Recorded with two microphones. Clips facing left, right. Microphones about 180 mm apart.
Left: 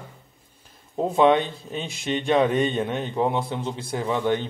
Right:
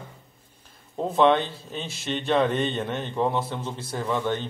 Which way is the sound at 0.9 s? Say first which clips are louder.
Left 2 dB; 10° left (ahead or behind).